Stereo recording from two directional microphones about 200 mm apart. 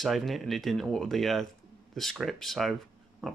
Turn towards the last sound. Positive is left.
turn(degrees=0)  # may be behind; listen again after turning